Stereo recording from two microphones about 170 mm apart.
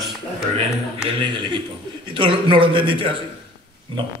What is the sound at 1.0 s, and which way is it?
A man's voice, 30° right (ahead or behind).